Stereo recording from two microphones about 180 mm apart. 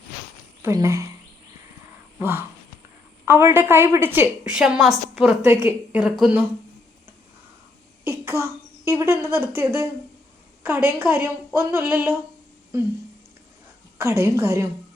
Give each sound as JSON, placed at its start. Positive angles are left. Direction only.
{"t": 0.6, "sound": "speech", "side_deg": -15}
{"t": 2.1, "sound": "a woman's voice", "side_deg": -10}
{"t": 8.0, "sound": "a woman's voice", "side_deg": -10}
{"t": 14.0, "sound": "a woman's voice", "side_deg": -15}